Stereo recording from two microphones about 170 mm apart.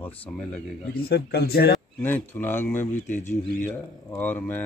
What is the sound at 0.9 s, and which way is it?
Speech, 65° left (ahead or behind).